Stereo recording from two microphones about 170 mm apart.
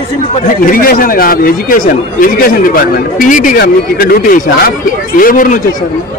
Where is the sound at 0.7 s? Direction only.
55° left (ahead or behind).